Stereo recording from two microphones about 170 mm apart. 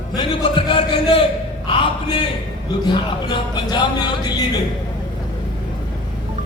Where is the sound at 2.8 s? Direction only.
25° left (ahead or behind).